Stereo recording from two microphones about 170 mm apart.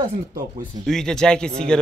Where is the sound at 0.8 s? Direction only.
5° left (ahead or behind).